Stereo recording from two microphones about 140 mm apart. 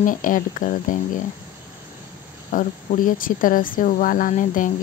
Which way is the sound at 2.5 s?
70° left (ahead or behind).